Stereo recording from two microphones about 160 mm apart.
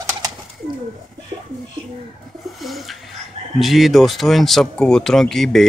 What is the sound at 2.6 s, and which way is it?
Bird, centre (ahead or behind).